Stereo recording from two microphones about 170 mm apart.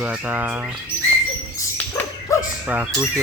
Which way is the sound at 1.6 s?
15° left (ahead or behind).